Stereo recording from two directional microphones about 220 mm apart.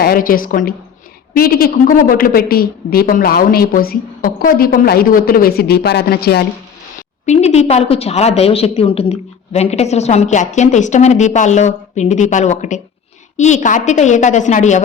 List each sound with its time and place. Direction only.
0.0 s a woman's voice: 40° left (ahead or behind)
7.3 s a woman's voice: 30° left (ahead or behind)